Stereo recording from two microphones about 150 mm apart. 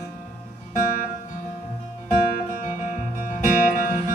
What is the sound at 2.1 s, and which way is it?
Music, 55° left (ahead or behind).